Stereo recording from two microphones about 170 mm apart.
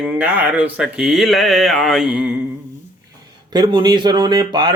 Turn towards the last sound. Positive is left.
turn(degrees=-25)  # may be behind; listen again after turning